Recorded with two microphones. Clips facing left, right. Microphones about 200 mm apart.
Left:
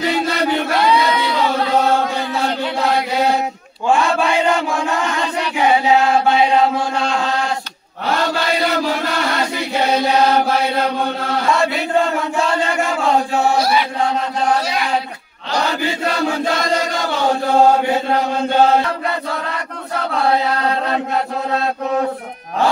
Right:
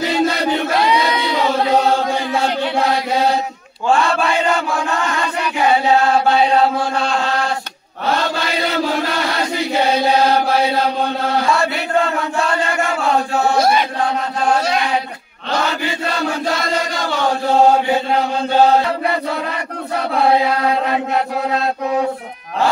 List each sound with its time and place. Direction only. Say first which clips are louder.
3.9 s chant: even; 15° left (ahead or behind)
13.6 s chant: right 2 dB; 50° right (ahead or behind)